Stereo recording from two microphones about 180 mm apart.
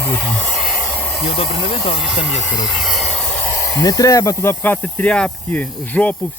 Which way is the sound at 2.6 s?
Centre (ahead or behind).